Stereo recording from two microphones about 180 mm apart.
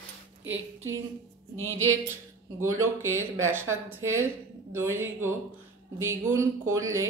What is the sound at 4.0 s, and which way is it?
Speech, 90° right.